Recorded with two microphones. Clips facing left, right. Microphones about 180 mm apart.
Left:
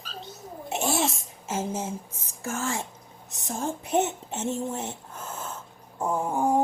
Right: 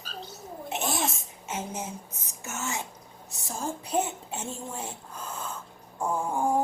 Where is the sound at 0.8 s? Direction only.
30° left (ahead or behind).